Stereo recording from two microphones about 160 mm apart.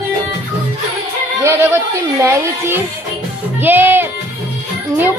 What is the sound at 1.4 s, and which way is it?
Yodeling, 15° right (ahead or behind).